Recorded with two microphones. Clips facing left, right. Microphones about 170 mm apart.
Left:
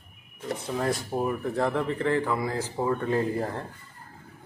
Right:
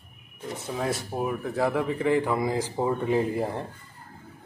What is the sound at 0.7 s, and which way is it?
A man's voice, centre (ahead or behind).